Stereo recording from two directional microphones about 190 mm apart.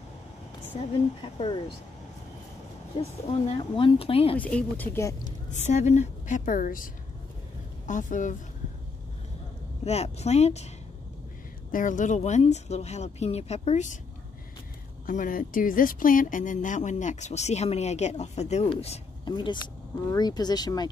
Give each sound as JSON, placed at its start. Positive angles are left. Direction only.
{"t": 0.7, "sound": "speech", "side_deg": 30}
{"t": 3.0, "sound": "speech", "side_deg": 30}
{"t": 4.4, "sound": "speech", "side_deg": 5}
{"t": 5.5, "sound": "a woman's voice", "side_deg": 40}
{"t": 9.8, "sound": "speech", "side_deg": 35}
{"t": 11.7, "sound": "speech", "side_deg": 45}
{"t": 15.0, "sound": "speech", "side_deg": 45}